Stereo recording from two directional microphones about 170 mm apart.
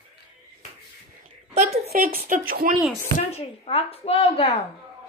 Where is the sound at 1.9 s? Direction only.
60° right (ahead or behind).